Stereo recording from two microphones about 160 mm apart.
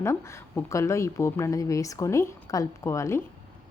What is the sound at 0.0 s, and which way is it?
A woman's voice, 15° left (ahead or behind).